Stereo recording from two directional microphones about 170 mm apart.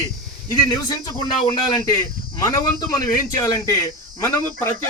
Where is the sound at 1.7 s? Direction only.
20° left (ahead or behind).